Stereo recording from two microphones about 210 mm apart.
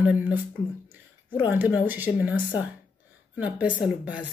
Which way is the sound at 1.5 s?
10° right (ahead or behind).